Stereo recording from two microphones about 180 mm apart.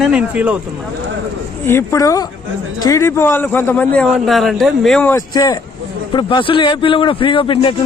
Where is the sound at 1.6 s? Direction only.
15° left (ahead or behind).